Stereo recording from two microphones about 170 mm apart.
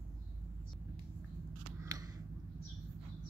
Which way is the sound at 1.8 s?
20° right (ahead or behind).